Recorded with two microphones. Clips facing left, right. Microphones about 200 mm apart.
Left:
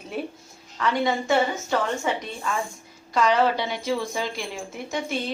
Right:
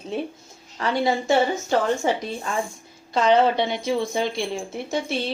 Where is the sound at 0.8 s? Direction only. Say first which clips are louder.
Right 1 dB; 30° right (ahead or behind).